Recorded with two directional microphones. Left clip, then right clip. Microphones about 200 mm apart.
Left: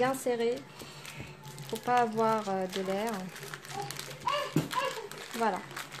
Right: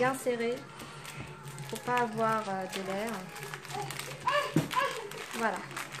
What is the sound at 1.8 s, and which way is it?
Speech, 45° left (ahead or behind).